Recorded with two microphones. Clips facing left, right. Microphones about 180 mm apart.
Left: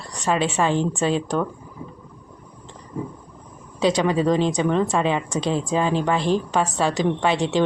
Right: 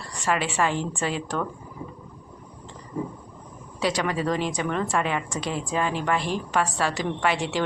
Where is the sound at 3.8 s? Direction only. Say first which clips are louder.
Left 6 dB; 20° left (ahead or behind).